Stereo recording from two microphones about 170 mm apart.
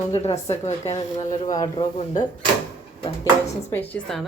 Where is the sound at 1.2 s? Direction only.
20° left (ahead or behind).